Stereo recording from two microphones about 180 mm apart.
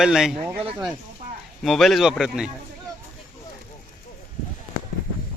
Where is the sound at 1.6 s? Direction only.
Centre (ahead or behind).